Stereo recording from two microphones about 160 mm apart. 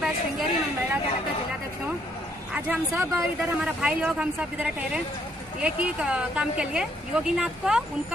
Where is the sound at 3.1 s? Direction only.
15° right (ahead or behind).